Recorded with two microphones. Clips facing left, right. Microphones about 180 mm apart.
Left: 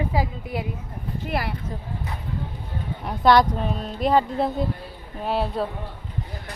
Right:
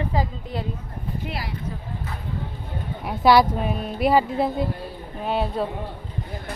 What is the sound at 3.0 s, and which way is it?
Speech, 5° right (ahead or behind).